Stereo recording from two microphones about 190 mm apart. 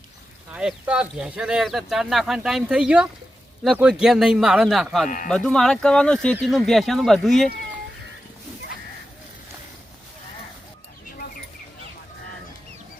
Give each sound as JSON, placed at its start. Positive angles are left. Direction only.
{"t": 0.5, "sound": "speech", "side_deg": -5}
{"t": 5.0, "sound": "speech", "side_deg": 45}
{"t": 5.3, "sound": "speech", "side_deg": 0}